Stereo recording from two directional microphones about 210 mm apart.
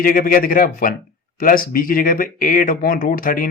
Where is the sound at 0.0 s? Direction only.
40° left (ahead or behind).